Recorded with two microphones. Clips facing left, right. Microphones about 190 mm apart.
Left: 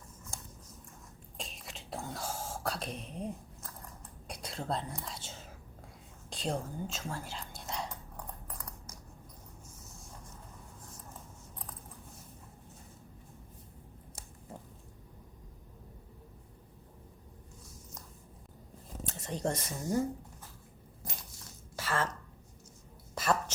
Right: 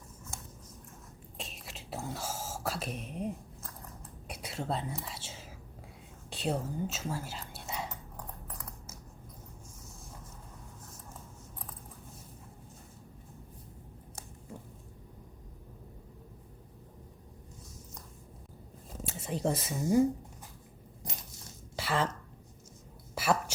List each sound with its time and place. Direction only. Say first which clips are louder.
1.4 s whispering: even; centre (ahead or behind)
19.0 s speech: right 2 dB; 5° right (ahead or behind)
21.8 s throat clearing: right 2 dB; 15° right (ahead or behind)
23.1 s a sound: right 1 dB; 10° right (ahead or behind)